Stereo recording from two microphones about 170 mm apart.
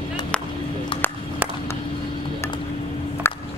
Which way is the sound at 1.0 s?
10° left (ahead or behind).